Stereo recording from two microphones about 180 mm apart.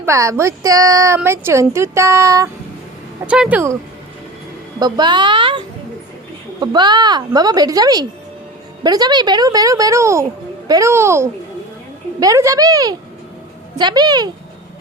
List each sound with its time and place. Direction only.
0.0 s a woman's voice: 15° right (ahead or behind)
3.2 s a woman's voice: 5° right (ahead or behind)
4.8 s a woman's voice: 25° right (ahead or behind)